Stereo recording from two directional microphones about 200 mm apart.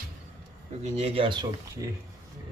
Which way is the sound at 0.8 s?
35° right (ahead or behind).